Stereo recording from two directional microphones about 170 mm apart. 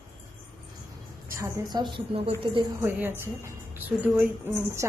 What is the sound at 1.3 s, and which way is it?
A woman's voice, 20° right (ahead or behind).